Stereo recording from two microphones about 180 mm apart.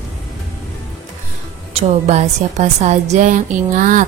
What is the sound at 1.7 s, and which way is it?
A woman's voice, 35° right (ahead or behind).